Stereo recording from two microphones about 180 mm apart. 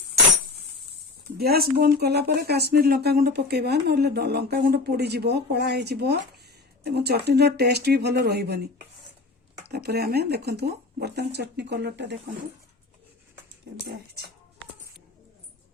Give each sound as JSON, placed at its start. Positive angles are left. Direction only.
{"t": 1.4, "sound": "speech", "side_deg": -60}
{"t": 9.7, "sound": "speech", "side_deg": -60}